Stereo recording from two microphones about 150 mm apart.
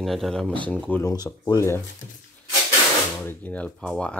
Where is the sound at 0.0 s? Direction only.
Centre (ahead or behind).